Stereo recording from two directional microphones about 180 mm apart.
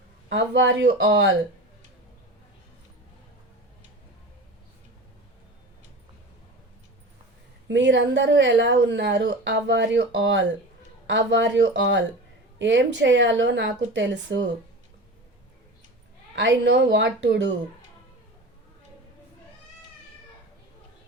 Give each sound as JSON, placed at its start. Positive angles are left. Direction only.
{"t": 0.3, "sound": "speech", "side_deg": -85}
{"t": 7.7, "sound": "speech", "side_deg": -80}
{"t": 13.9, "sound": "speech", "side_deg": -90}
{"t": 16.3, "sound": "speech", "side_deg": -90}